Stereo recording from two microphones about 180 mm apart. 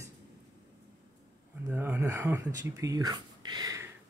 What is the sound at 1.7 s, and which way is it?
Speech, 10° right (ahead or behind).